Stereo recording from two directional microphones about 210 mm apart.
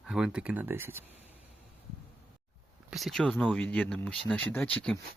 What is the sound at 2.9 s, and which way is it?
Speech, centre (ahead or behind).